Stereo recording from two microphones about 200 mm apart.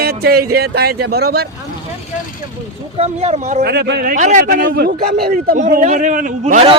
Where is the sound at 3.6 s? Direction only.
55° right (ahead or behind).